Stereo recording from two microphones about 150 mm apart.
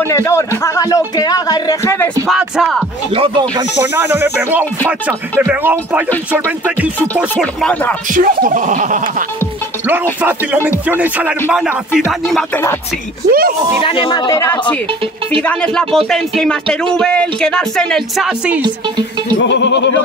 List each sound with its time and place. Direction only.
0.0 s speech: 15° left (ahead or behind)
2.2 s speech: centre (ahead or behind)
3.2 s speech: 30° right (ahead or behind)
3.8 s speech: 15° right (ahead or behind)
7.3 s speech: 5° left (ahead or behind)
8.1 s a sound: 65° right (ahead or behind)
10.2 s speech: 10° right (ahead or behind)
13.3 s speech: 75° right (ahead or behind)
13.8 s speech: 35° left (ahead or behind)
15.4 s speech: 5° left (ahead or behind)